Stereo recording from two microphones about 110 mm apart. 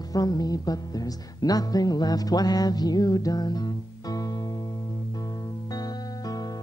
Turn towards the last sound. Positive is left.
turn(degrees=35)  # may be behind; listen again after turning